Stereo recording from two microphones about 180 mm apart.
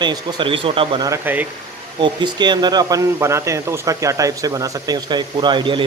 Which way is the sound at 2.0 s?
25° right (ahead or behind).